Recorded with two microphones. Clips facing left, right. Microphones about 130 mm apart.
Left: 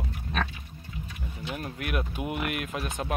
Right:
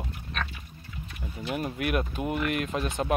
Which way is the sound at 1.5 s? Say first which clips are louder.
Right 5 dB; 5° right (ahead or behind).